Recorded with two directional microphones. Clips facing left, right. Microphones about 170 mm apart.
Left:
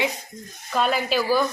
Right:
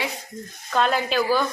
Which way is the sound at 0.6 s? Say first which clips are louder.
Right 1 dB; 5° left (ahead or behind).